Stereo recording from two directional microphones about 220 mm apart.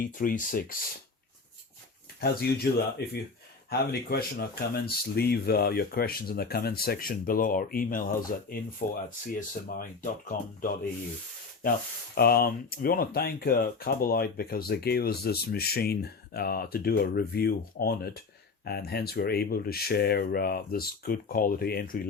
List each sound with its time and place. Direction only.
0.0 s speech: 40° left (ahead or behind)
2.2 s speech: 45° left (ahead or behind)